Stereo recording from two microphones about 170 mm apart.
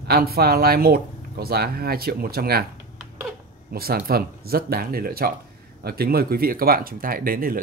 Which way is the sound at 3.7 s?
65° right (ahead or behind).